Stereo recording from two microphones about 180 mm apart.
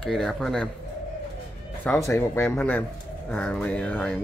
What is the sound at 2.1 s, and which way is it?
Speech, 10° left (ahead or behind).